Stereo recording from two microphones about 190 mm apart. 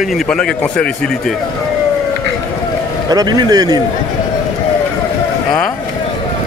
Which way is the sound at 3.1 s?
20° right (ahead or behind).